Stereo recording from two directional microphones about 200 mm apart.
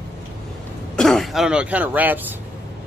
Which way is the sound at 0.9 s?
Centre (ahead or behind).